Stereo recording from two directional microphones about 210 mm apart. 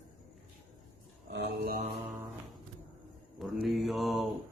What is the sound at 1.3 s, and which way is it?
Mantra, 45° right (ahead or behind).